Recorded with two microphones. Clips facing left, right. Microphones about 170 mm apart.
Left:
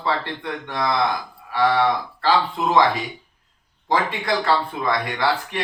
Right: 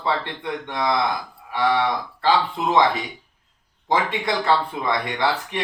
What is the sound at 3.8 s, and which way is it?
A man's voice, 20° right (ahead or behind).